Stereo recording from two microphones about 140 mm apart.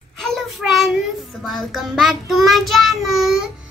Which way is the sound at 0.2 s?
Centre (ahead or behind).